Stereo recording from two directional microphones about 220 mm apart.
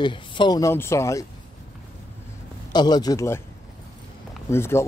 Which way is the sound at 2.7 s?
20° left (ahead or behind).